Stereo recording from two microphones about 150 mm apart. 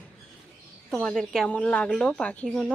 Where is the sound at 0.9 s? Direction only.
5° left (ahead or behind).